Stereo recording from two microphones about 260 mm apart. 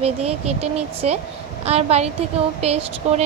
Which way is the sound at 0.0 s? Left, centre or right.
Right.